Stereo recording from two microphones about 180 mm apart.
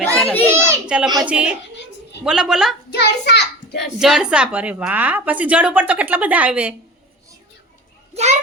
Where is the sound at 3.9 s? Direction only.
5° right (ahead or behind).